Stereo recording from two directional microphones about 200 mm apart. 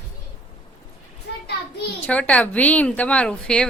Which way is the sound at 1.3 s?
55° left (ahead or behind).